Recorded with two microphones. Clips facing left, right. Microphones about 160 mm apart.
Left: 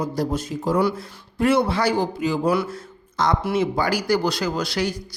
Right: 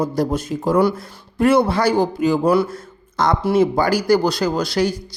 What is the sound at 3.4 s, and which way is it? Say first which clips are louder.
Speech: right 6 dB; 35° right (ahead or behind).